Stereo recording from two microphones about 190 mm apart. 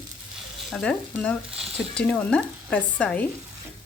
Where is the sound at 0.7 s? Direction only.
5° left (ahead or behind).